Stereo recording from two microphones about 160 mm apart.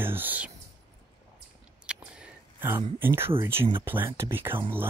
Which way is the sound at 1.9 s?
10° right (ahead or behind).